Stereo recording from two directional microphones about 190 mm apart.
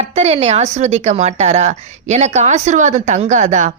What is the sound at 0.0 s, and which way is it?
Speech, 35° right (ahead or behind).